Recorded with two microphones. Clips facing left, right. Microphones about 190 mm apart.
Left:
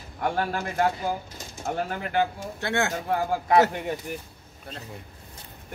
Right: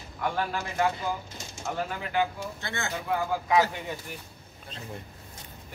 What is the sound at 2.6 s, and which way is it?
Speech, 70° left (ahead or behind).